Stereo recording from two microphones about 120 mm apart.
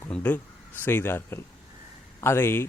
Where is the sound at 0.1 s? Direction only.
15° left (ahead or behind).